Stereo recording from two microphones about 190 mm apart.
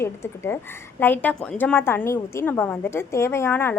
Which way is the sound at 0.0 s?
15° left (ahead or behind).